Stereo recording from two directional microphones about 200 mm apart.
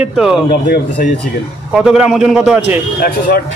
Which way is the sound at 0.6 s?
55° left (ahead or behind).